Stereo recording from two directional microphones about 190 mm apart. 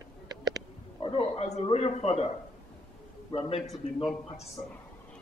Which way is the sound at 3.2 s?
30° left (ahead or behind).